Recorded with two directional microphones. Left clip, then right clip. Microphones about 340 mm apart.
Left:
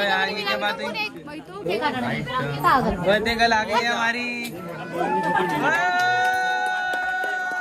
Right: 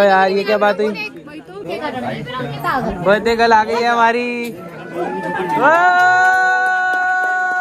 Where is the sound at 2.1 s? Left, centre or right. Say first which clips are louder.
Right 3 dB; left.